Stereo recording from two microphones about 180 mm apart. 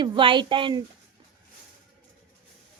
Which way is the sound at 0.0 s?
25° right (ahead or behind).